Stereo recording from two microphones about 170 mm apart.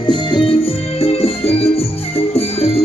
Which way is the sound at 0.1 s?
30° left (ahead or behind).